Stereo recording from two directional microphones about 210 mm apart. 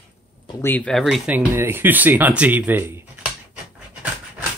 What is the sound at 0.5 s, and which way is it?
Speech, 10° left (ahead or behind).